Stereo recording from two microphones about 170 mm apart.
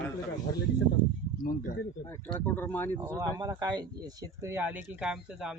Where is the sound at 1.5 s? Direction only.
55° left (ahead or behind).